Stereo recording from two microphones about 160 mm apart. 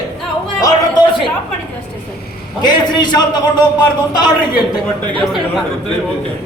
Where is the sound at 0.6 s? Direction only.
25° left (ahead or behind).